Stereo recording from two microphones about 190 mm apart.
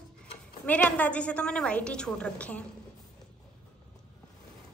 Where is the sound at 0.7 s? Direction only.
5° left (ahead or behind).